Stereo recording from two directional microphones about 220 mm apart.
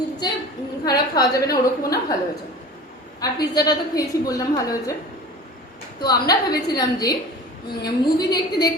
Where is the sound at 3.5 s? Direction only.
15° left (ahead or behind).